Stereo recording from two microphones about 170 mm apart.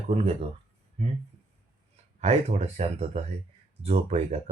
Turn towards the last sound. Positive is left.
turn(degrees=-35)  # may be behind; listen again after turning